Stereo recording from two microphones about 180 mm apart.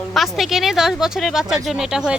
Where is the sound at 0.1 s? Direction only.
Centre (ahead or behind).